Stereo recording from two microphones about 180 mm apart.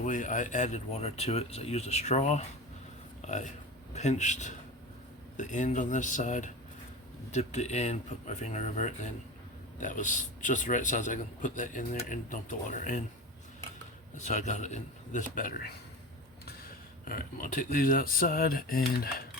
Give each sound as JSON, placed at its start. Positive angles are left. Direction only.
{"t": 0.0, "sound": "a man's voice", "side_deg": 45}
{"t": 14.2, "sound": "speech", "side_deg": 40}
{"t": 17.1, "sound": "a man's voice", "side_deg": 50}